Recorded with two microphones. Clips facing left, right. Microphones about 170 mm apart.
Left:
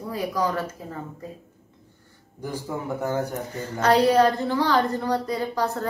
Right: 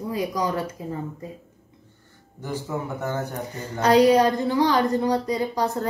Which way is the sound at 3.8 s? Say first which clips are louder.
Right 2 dB; 15° right (ahead or behind).